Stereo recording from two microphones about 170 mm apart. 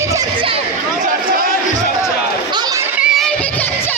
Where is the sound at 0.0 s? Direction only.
15° right (ahead or behind).